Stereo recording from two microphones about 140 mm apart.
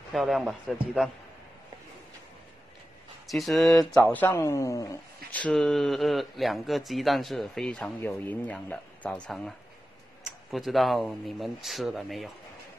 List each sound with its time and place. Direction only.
0.1 s a man's voice: centre (ahead or behind)
3.3 s speech: centre (ahead or behind)
4.0 s speech: 10° left (ahead or behind)
5.3 s speech: 5° left (ahead or behind)